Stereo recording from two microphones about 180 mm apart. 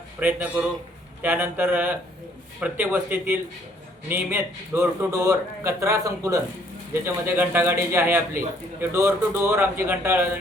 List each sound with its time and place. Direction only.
0.2 s a man's voice: 10° right (ahead or behind)